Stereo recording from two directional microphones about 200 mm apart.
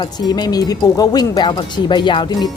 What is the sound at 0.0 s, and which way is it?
Speech, 20° left (ahead or behind).